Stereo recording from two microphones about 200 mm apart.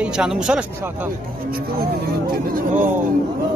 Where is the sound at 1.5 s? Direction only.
50° right (ahead or behind).